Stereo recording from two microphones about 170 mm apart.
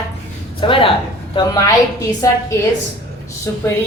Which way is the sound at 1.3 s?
20° left (ahead or behind).